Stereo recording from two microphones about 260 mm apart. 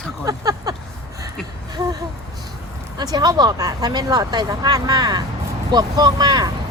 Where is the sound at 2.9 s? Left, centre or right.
Centre.